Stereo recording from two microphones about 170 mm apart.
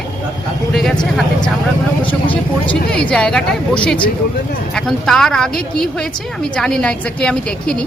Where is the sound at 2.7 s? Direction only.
5° left (ahead or behind).